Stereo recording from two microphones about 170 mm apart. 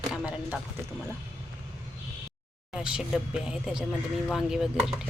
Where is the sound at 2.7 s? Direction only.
5° right (ahead or behind).